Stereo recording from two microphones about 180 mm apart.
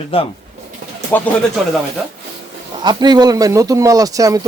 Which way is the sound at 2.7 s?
25° right (ahead or behind).